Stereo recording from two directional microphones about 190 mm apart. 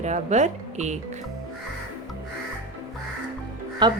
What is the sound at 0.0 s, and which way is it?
Speech, 40° right (ahead or behind).